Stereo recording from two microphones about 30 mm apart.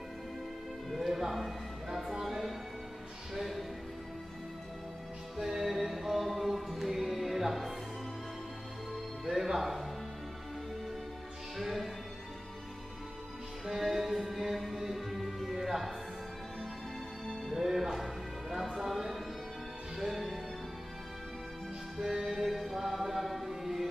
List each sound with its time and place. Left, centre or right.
0.8 s music: centre
5.4 s music: centre
9.2 s music: centre
11.5 s music: centre
13.7 s music: centre
17.6 s music: centre
22.0 s music: centre